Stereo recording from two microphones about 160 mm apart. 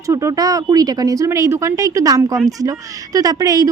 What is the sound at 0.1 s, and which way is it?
A woman's voice, 20° right (ahead or behind).